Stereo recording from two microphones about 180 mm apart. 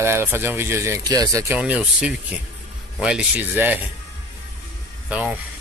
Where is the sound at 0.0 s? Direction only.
15° right (ahead or behind).